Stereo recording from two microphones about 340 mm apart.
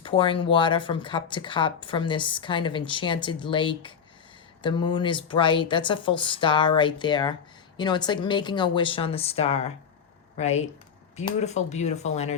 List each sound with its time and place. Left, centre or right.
0.0 s speech: centre